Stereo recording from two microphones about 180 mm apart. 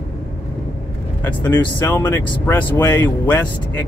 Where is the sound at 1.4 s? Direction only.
10° left (ahead or behind).